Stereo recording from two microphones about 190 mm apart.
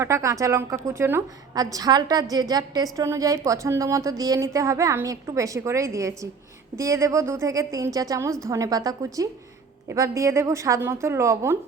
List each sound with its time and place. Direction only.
0.0 s a woman's voice: 15° right (ahead or behind)